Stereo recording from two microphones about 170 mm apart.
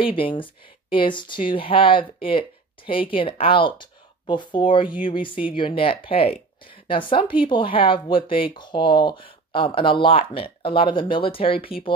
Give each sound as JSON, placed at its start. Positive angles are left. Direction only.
{"t": 0.0, "sound": "speech", "side_deg": 30}